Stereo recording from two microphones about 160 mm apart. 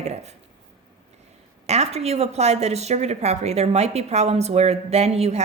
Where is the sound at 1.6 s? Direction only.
40° right (ahead or behind).